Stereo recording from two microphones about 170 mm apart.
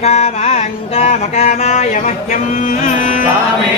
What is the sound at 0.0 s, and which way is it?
Mantra, 40° left (ahead or behind).